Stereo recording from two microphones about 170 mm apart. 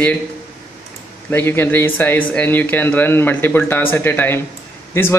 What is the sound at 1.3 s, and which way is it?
Speech, 15° left (ahead or behind).